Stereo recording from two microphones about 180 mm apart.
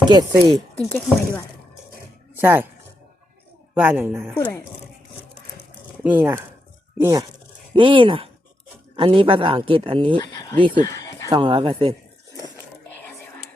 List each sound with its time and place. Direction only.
0.0 s speech: 25° right (ahead or behind)
0.9 s speech: 15° left (ahead or behind)
2.4 s a woman's voice: 10° right (ahead or behind)
3.8 s a woman's voice: 10° right (ahead or behind)
4.4 s speech: 15° left (ahead or behind)
6.0 s speech: 10° right (ahead or behind); by 10.2 s 30° right (ahead or behind)
10.2 s speech: 25° left (ahead or behind)
10.8 s a sound: 20° left (ahead or behind)
11.3 s speech: 25° right (ahead or behind)
12.9 s whispering: 10° left (ahead or behind)